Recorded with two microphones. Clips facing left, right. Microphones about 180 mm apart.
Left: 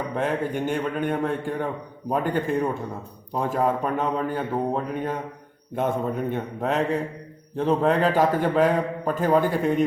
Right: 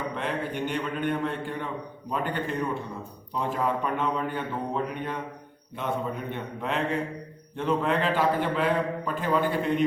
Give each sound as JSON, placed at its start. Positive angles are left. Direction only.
{"t": 0.2, "sound": "a man's voice", "side_deg": 45}